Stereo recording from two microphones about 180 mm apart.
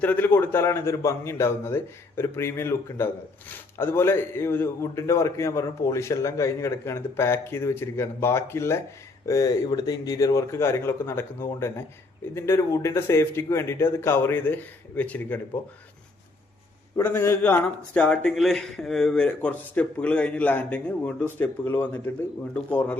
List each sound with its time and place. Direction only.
0.0 s a man's voice: 10° left (ahead or behind)
17.0 s a man's voice: 10° left (ahead or behind)